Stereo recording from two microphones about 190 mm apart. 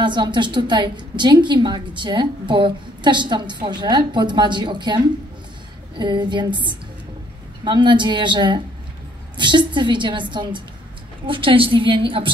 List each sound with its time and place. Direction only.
0.0 s a woman's voice: 25° right (ahead or behind)